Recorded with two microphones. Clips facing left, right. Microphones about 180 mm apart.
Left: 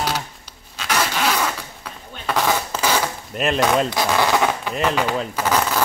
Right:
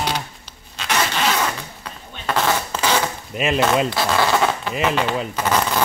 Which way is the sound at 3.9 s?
15° left (ahead or behind).